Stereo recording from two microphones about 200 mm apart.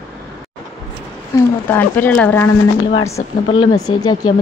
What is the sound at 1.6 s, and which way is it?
Speech, 10° left (ahead or behind).